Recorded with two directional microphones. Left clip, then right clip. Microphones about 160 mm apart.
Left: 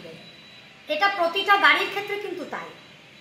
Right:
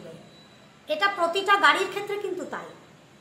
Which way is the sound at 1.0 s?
5° right (ahead or behind).